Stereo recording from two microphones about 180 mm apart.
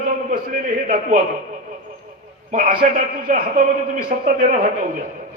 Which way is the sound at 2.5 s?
45° right (ahead or behind).